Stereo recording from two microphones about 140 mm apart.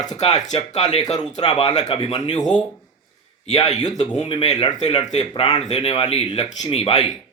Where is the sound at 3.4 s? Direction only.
50° left (ahead or behind).